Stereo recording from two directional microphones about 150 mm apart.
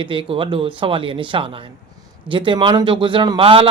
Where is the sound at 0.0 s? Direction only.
35° right (ahead or behind).